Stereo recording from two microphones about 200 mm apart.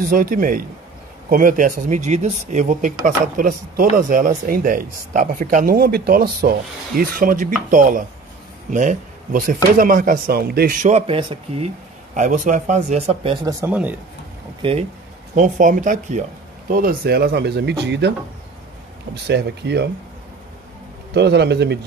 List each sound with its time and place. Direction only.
0.0 s speech: 45° right (ahead or behind); by 11.7 s 25° right (ahead or behind)
12.1 s speech: 40° right (ahead or behind)
13.6 s speech: 10° right (ahead or behind)
14.6 s speech: 25° right (ahead or behind)
15.3 s speech: 40° right (ahead or behind); by 18.1 s 60° right (ahead or behind)
19.2 s speech: 55° right (ahead or behind)
21.1 s speech: 55° right (ahead or behind)